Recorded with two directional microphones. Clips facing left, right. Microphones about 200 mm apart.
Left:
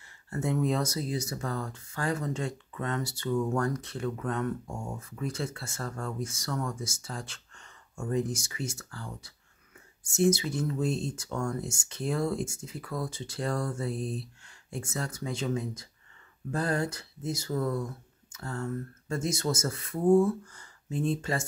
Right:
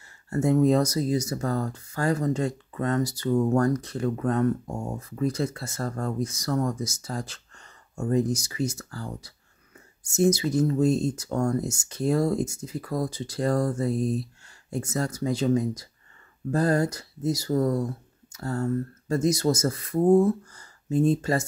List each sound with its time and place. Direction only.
0.3 s speech: 40° right (ahead or behind)